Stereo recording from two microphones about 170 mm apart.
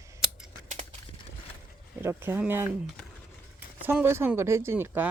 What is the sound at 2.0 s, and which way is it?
Speech, 15° right (ahead or behind).